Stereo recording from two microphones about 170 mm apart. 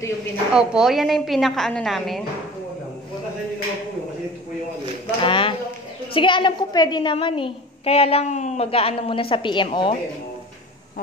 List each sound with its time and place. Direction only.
0.5 s a woman's voice: 5° right (ahead or behind)
5.2 s a sound: 30° left (ahead or behind)
6.1 s a woman's voice: 30° left (ahead or behind)